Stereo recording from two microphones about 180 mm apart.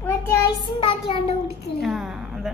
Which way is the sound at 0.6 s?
30° left (ahead or behind).